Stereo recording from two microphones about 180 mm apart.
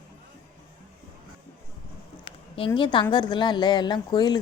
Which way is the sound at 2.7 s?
25° left (ahead or behind).